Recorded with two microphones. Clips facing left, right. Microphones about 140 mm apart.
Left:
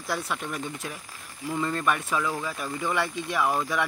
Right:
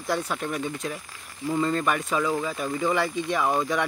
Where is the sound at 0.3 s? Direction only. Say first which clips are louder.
Right 3 dB; centre (ahead or behind).